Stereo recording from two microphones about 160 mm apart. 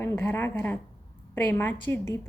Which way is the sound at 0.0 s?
15° left (ahead or behind).